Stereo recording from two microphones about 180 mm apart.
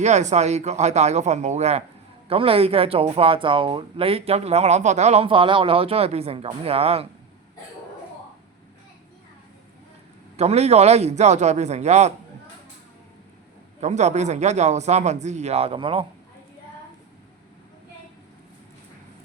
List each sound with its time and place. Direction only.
0.0 s speech: 40° right (ahead or behind)
10.3 s speech: 35° right (ahead or behind)
13.8 s speech: 40° right (ahead or behind)